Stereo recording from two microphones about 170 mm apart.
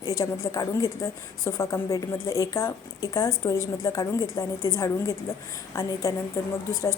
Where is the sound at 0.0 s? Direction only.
20° left (ahead or behind).